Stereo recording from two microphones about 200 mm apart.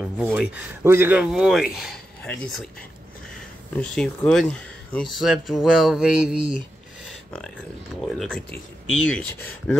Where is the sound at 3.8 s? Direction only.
5° left (ahead or behind).